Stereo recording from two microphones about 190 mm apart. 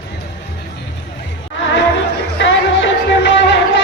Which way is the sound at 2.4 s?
75° left (ahead or behind).